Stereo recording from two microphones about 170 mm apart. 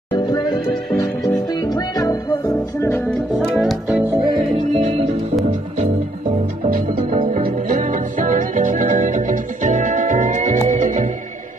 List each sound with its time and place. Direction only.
0.1 s music: 25° left (ahead or behind)
3.3 s speech: centre (ahead or behind)
6.7 s music: 50° right (ahead or behind)